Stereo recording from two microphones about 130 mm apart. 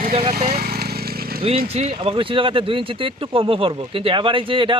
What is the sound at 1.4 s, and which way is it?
Speech, 50° right (ahead or behind).